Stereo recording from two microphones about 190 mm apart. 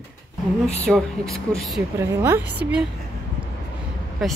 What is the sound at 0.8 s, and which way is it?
Speech, 5° left (ahead or behind).